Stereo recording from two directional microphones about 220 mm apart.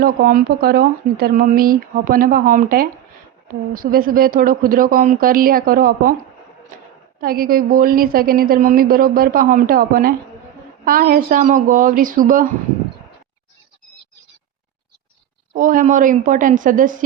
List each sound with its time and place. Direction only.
0.0 s a woman's voice: 40° right (ahead or behind)
7.2 s a woman's voice: 40° right (ahead or behind)
15.5 s a woman's voice: 35° right (ahead or behind)